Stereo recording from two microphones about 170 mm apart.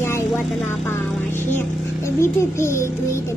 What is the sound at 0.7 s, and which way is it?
A woman's voice, 10° left (ahead or behind).